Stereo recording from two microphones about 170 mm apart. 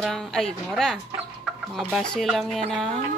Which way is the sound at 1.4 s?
5° right (ahead or behind).